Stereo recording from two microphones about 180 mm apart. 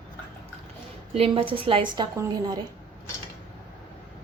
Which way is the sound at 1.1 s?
30° right (ahead or behind).